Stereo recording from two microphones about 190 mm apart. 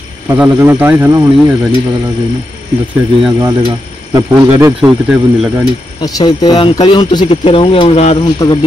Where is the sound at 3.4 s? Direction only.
20° right (ahead or behind).